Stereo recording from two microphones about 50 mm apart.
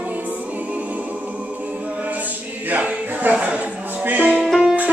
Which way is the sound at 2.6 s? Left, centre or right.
Right.